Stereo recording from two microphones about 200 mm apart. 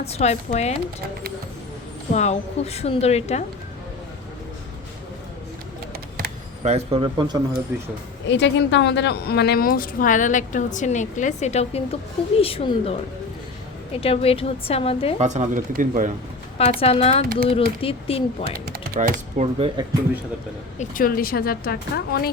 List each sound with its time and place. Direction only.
0.0 s a woman's voice: 35° left (ahead or behind)
2.1 s a woman's voice: 35° left (ahead or behind)
6.6 s speech: 30° right (ahead or behind)
8.3 s a woman's voice: 60° left (ahead or behind); by 15.1 s 30° left (ahead or behind)
15.2 s speech: 35° right (ahead or behind)
16.6 s a woman's voice: 30° left (ahead or behind)
18.6 s speech: 50° right (ahead or behind); by 19.8 s 30° right (ahead or behind)
20.7 s a woman's voice: 45° left (ahead or behind)